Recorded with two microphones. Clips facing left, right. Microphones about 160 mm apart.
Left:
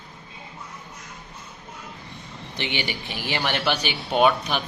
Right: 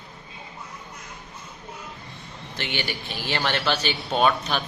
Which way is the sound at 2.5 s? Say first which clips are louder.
Left 1 dB; 15° left (ahead or behind).